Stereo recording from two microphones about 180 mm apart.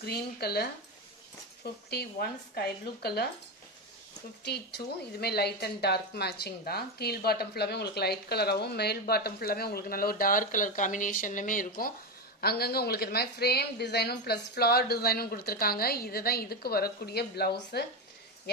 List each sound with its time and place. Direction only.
0.0 s a woman's voice: 60° left (ahead or behind)
4.5 s a woman's voice: 65° left (ahead or behind)